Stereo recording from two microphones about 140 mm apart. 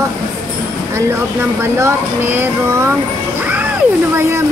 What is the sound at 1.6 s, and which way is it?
Speech, 20° right (ahead or behind).